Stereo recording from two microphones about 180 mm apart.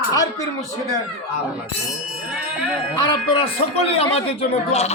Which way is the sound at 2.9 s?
25° left (ahead or behind).